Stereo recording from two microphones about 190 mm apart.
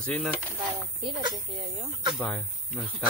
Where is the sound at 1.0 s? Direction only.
25° right (ahead or behind).